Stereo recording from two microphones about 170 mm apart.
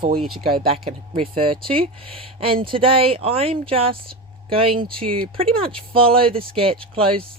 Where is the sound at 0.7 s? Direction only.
35° right (ahead or behind).